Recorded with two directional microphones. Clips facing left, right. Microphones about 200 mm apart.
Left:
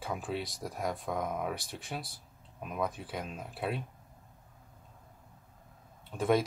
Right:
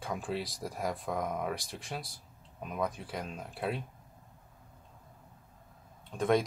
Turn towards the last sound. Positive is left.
turn(degrees=5)  # may be behind; listen again after turning